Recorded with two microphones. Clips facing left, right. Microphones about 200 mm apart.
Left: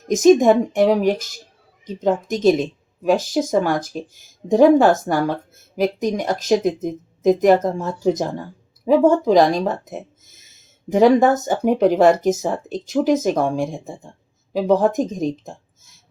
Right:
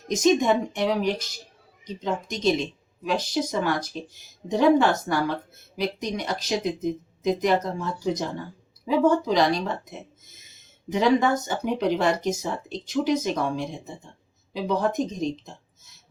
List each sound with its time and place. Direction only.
0.1 s speech: 45° left (ahead or behind)